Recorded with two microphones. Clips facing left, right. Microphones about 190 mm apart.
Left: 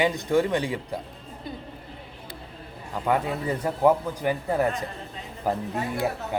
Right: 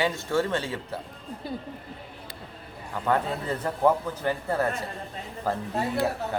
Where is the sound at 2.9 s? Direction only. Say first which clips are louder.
Left 1 dB; 10° left (ahead or behind).